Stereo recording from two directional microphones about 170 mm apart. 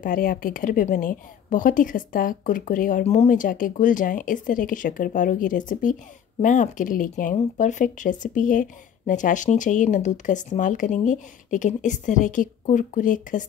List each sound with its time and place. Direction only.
0.0 s speech: 55° left (ahead or behind)